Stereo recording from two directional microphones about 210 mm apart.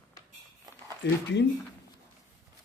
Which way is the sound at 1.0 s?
55° left (ahead or behind).